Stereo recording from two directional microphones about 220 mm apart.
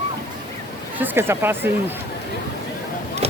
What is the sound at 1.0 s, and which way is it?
Speech, 10° right (ahead or behind).